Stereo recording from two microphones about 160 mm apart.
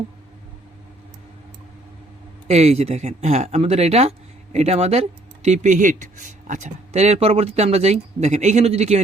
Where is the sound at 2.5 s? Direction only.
40° right (ahead or behind).